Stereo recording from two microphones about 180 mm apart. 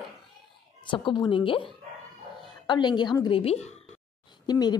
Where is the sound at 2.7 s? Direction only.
25° left (ahead or behind).